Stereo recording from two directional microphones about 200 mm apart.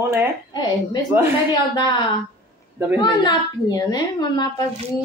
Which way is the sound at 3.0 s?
20° left (ahead or behind).